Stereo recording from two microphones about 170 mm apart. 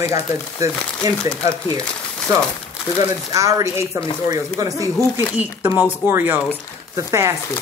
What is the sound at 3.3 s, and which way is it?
Speech, 20° right (ahead or behind).